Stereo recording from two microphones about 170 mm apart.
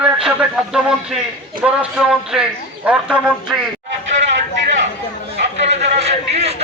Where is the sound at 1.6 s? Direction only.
5° right (ahead or behind).